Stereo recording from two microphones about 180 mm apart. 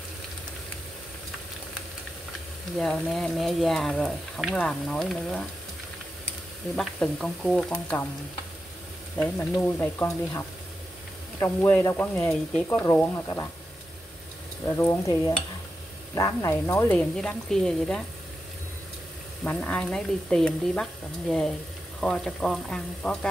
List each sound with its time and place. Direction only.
2.8 s speech: centre (ahead or behind)
6.7 s speech: centre (ahead or behind)
9.2 s speech: 5° left (ahead or behind)
14.7 s speech: 15° left (ahead or behind)
19.4 s speech: 10° left (ahead or behind)